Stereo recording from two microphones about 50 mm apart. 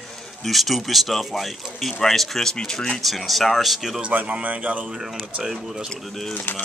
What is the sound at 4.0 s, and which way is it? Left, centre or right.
Speech, right.